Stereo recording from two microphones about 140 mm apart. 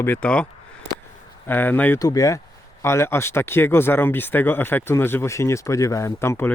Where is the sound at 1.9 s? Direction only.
25° left (ahead or behind).